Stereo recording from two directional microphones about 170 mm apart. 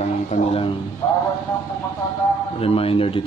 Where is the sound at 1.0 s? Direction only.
20° left (ahead or behind).